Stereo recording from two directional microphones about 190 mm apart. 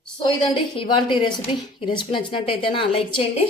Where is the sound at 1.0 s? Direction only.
25° left (ahead or behind).